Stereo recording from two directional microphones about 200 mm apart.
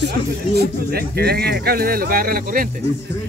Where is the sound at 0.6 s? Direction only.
50° right (ahead or behind).